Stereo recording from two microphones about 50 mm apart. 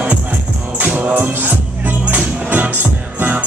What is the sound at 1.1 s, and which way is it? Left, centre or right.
Music, right.